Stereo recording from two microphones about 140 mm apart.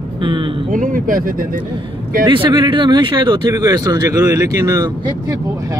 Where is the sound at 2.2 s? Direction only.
35° right (ahead or behind).